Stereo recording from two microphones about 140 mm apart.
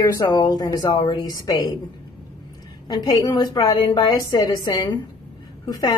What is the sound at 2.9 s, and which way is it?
A woman's voice, 30° left (ahead or behind).